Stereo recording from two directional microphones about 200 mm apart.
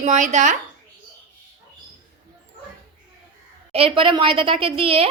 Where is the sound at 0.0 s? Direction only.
35° right (ahead or behind).